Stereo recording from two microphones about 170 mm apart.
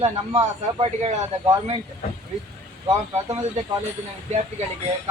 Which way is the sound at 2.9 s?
20° right (ahead or behind).